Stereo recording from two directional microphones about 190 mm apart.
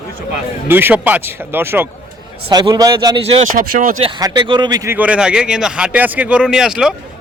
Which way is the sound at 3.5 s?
45° right (ahead or behind).